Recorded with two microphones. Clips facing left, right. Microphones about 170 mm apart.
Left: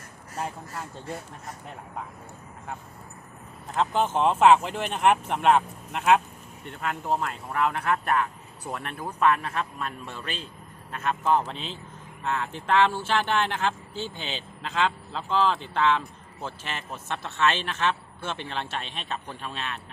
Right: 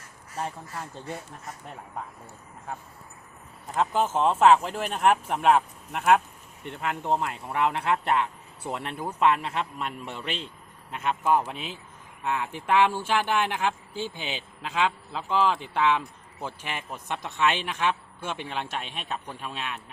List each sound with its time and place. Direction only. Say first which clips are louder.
3.8 s speech: even; 5° right (ahead or behind)
6.7 s speech: right 1 dB; 20° right (ahead or behind)